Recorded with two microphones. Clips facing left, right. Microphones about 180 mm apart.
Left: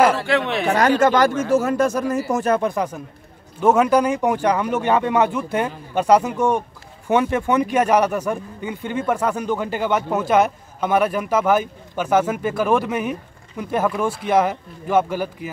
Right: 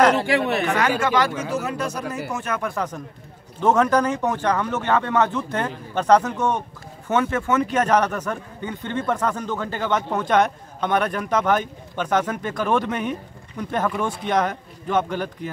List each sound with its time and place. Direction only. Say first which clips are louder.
0.3 s speech: even; 5° right (ahead or behind)
0.7 s speech: left 5 dB; 40° left (ahead or behind)
2.3 s speech: left 10 dB; 35° left (ahead or behind)
2.6 s a man's voice: left 4 dB; 15° left (ahead or behind)